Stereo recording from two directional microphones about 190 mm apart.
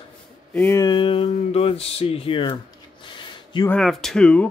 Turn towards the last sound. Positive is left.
turn(degrees=5)  # may be behind; listen again after turning